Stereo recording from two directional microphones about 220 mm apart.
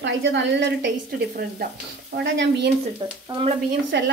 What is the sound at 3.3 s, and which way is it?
Speech, 25° right (ahead or behind).